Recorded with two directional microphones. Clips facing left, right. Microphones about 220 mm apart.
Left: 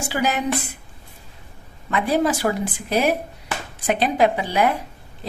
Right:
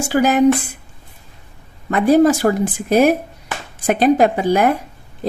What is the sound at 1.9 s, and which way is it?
Speech, 45° right (ahead or behind).